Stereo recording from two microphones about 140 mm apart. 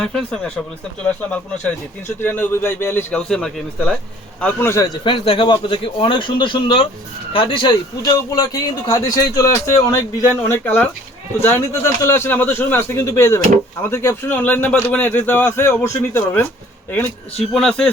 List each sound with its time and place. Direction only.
0.0 s speech: 5° left (ahead or behind)
2.2 s speech: 15° left (ahead or behind)
5.0 s a man's voice: 40° left (ahead or behind); by 9.9 s 25° left (ahead or behind)
10.3 s speech: 10° left (ahead or behind)